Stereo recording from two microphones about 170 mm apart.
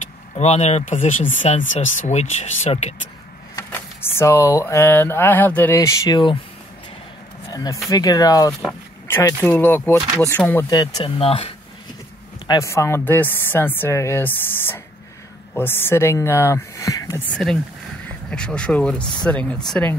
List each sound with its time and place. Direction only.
0.4 s speech: 40° left (ahead or behind)
3.5 s speech: 15° left (ahead or behind)
7.4 s speech: 20° left (ahead or behind)
10.7 s speech: 30° left (ahead or behind)
12.4 s speech: 20° left (ahead or behind)
17.4 s speech: 5° left (ahead or behind)